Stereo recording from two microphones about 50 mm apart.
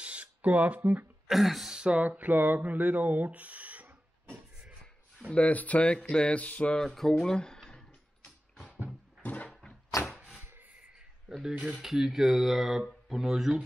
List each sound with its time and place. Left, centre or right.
0.0 s a sound: right
1.2 s speech: centre
1.7 s speech: centre
2.0 s speech: right
5.3 s speech: left
6.8 s speech: centre
9.2 s a sound: left
10.1 s a sound: centre
10.4 s rub: right
11.4 s speech: centre
11.7 s speech: centre